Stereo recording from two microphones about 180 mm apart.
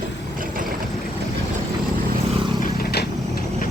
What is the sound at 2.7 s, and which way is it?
Vehicle, 60° left (ahead or behind).